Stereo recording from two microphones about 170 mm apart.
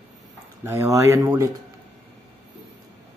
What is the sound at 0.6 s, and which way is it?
Speech, 15° right (ahead or behind).